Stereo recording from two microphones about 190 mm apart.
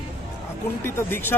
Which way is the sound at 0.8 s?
10° left (ahead or behind).